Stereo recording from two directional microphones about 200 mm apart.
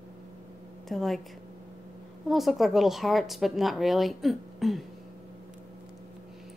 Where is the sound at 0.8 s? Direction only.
Centre (ahead or behind).